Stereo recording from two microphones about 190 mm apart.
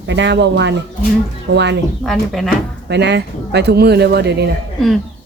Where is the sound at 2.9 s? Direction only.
60° right (ahead or behind).